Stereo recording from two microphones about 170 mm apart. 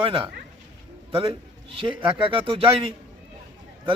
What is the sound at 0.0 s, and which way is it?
A man's voice, 30° right (ahead or behind).